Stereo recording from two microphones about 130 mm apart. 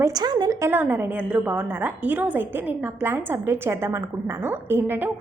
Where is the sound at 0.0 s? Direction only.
30° right (ahead or behind).